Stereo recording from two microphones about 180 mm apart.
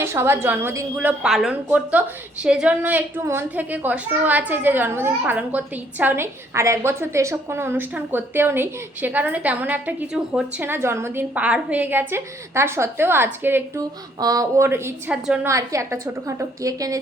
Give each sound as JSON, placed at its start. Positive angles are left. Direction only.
{"t": 0.0, "sound": "a woman's voice", "side_deg": -15}